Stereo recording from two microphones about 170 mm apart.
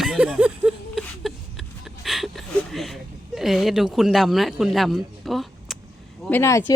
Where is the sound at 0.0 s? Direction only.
5° right (ahead or behind).